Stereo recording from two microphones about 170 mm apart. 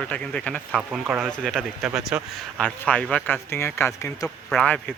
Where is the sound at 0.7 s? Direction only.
5° right (ahead or behind); by 4.3 s 15° left (ahead or behind).